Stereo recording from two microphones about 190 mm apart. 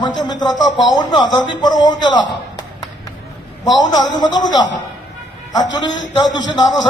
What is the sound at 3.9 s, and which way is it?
Speech, 20° left (ahead or behind).